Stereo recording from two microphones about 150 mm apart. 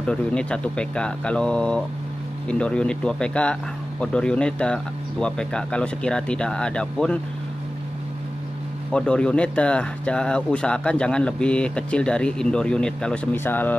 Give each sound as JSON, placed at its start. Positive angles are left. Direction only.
{"t": 0.0, "sound": "speech", "side_deg": 5}
{"t": 8.9, "sound": "speech", "side_deg": 5}